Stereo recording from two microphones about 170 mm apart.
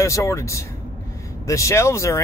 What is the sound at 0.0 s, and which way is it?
Speech, 20° left (ahead or behind).